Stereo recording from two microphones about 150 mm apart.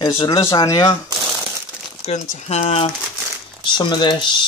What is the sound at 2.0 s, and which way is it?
Speech, 50° left (ahead or behind).